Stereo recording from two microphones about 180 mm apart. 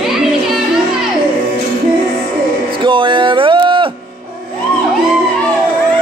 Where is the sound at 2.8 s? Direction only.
25° right (ahead or behind).